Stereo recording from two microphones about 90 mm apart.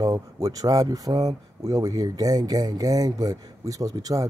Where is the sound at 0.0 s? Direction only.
40° right (ahead or behind).